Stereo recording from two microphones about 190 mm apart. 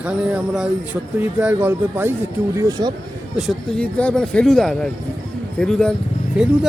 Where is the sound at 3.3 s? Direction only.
Centre (ahead or behind).